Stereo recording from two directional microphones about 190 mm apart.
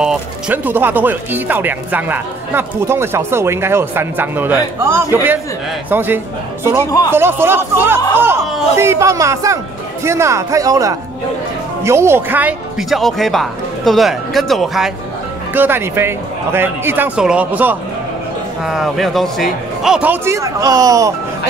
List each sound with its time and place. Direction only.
0.0 s speech: 5° right (ahead or behind)
15.5 s speech: 10° right (ahead or behind)